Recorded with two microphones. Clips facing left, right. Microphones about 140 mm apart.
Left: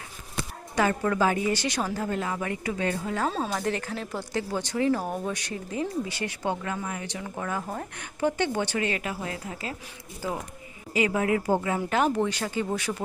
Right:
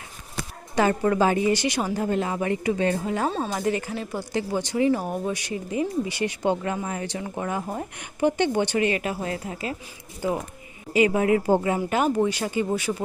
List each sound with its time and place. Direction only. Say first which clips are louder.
0.8 s speech: right 3 dB; 25° right (ahead or behind)
1.5 s speech: right 4 dB; 10° right (ahead or behind); by 3.1 s 30° right (ahead or behind)
3.2 s speech: right 1 dB; centre (ahead or behind); by 9.6 s 30° right (ahead or behind)
10.9 s speech: right 5 dB; 25° right (ahead or behind)
11.8 s speech: right 2 dB; 5° right (ahead or behind)